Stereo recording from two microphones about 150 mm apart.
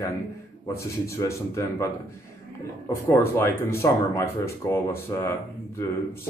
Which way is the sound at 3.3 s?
20° left (ahead or behind).